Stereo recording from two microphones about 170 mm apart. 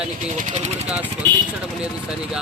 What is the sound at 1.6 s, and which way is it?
Speech, 5° right (ahead or behind).